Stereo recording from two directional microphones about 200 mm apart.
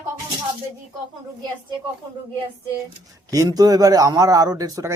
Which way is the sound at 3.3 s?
20° right (ahead or behind).